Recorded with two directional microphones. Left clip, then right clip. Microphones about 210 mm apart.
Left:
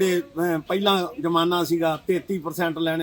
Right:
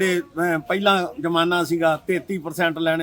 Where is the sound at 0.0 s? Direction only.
Centre (ahead or behind).